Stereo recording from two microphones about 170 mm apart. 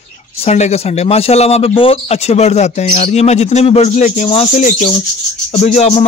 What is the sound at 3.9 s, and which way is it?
A man's voice, 50° left (ahead or behind).